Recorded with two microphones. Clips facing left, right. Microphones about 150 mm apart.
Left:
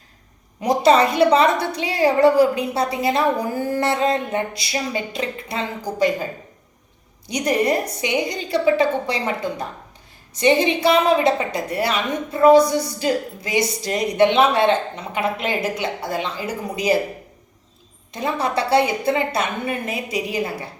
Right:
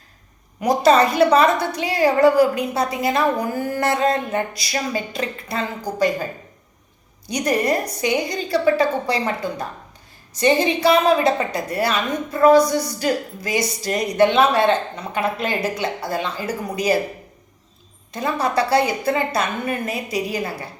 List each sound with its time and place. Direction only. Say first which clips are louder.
0.6 s a woman's voice: even; 25° left (ahead or behind)
7.3 s a woman's voice: even; 25° left (ahead or behind)
18.1 s a woman's voice: right 1 dB; 25° left (ahead or behind)